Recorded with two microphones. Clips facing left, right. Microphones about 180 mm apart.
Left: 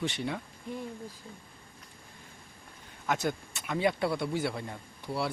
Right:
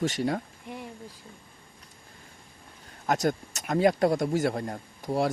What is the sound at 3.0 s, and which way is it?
Speech, 40° right (ahead or behind).